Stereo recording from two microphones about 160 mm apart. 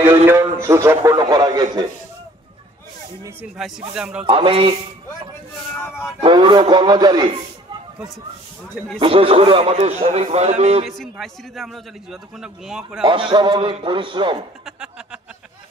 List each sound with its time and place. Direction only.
0.0 s a man's voice: 15° right (ahead or behind)
3.9 s a man's voice: 5° right (ahead or behind)
4.3 s a man's voice: 35° right (ahead or behind)
6.2 s a man's voice: 30° right (ahead or behind)
8.7 s a man's voice: centre (ahead or behind)
9.0 s a man's voice: 35° right (ahead or behind)
10.9 s a man's voice: centre (ahead or behind)
13.0 s a man's voice: 30° right (ahead or behind)